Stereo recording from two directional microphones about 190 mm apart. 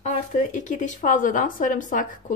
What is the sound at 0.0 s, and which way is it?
A woman's voice, 40° left (ahead or behind).